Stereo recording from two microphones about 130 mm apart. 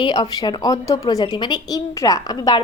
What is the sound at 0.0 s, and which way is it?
Speech, 35° left (ahead or behind).